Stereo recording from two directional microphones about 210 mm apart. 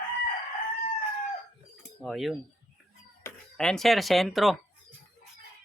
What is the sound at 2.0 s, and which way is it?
Speech, centre (ahead or behind).